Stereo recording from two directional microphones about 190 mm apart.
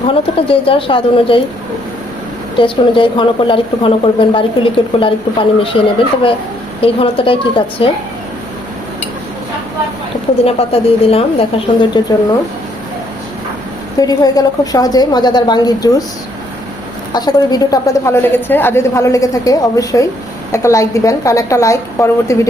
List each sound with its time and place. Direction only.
0.1 s a woman's voice: 30° left (ahead or behind)
2.6 s a woman's voice: 25° left (ahead or behind)
6.8 s a woman's voice: 30° left (ahead or behind)
10.4 s a woman's voice: 30° left (ahead or behind)
14.0 s a woman's voice: 20° left (ahead or behind)
17.2 s a woman's voice: 20° left (ahead or behind)